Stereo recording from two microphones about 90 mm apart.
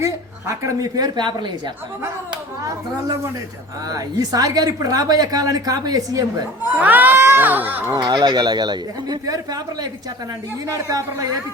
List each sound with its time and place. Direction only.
0.0 s speech: 35° right (ahead or behind); by 1.7 s 55° right (ahead or behind)
3.8 s a woman's voice: 45° right (ahead or behind)
6.7 s speech: 20° right (ahead or behind)
7.9 s a woman's voice: 50° right (ahead or behind)